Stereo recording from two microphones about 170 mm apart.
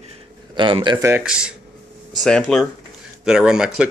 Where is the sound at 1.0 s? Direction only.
10° right (ahead or behind).